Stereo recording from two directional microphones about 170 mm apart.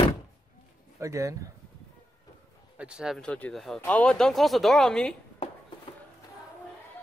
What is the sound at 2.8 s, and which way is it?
Speech, 5° right (ahead or behind).